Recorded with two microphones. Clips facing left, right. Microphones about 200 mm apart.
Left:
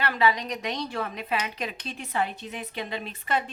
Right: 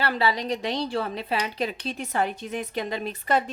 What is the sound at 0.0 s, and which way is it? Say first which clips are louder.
A woman's voice: even; 35° right (ahead or behind).